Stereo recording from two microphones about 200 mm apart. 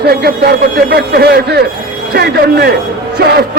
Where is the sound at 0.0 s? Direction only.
50° right (ahead or behind).